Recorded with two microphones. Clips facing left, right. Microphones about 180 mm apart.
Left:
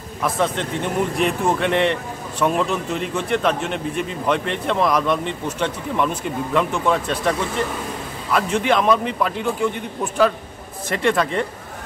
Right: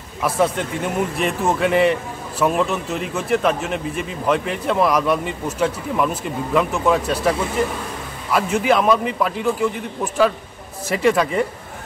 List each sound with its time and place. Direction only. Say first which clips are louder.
0.2 s speech: right 2 dB; 5° right (ahead or behind)